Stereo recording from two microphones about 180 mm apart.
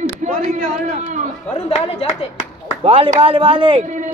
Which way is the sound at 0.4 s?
35° right (ahead or behind).